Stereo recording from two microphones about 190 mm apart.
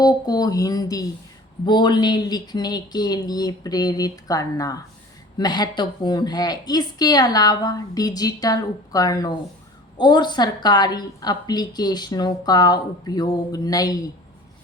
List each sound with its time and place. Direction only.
0.0 s a woman's voice: 20° left (ahead or behind)